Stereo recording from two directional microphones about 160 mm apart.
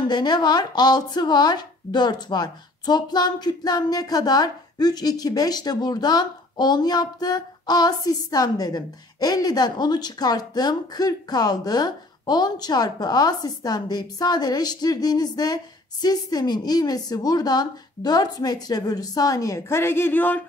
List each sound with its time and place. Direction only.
0.1 s speech: 25° left (ahead or behind); by 20.4 s 10° left (ahead or behind)